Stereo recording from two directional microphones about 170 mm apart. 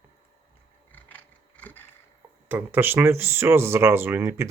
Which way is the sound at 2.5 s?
10° right (ahead or behind).